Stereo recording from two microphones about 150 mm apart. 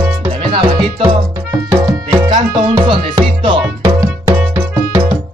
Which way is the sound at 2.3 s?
35° right (ahead or behind).